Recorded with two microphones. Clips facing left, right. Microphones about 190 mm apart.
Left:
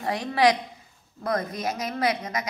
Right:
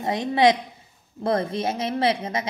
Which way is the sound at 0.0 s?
20° right (ahead or behind).